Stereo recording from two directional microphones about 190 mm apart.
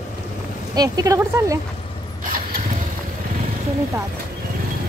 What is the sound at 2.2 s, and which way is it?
Vehicle, 45° right (ahead or behind).